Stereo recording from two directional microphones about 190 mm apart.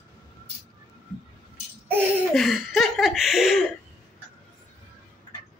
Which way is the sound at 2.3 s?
Centre (ahead or behind).